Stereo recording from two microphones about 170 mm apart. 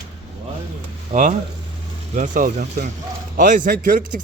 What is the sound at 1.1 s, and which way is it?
Speech, 45° right (ahead or behind).